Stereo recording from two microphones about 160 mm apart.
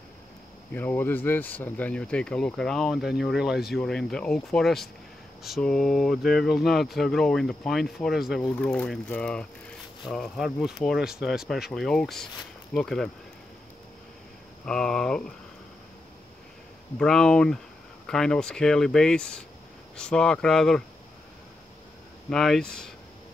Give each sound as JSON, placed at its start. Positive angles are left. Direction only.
{"t": 0.7, "sound": "speech", "side_deg": 10}
{"t": 14.6, "sound": "speech", "side_deg": 5}
{"t": 17.0, "sound": "speech", "side_deg": 5}
{"t": 22.3, "sound": "speech", "side_deg": 5}